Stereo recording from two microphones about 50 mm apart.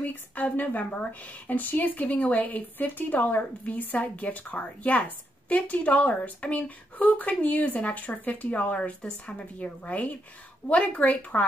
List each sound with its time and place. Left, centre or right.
0.0 s a woman's voice: left